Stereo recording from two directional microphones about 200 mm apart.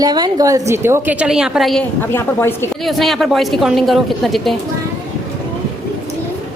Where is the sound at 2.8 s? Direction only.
Centre (ahead or behind).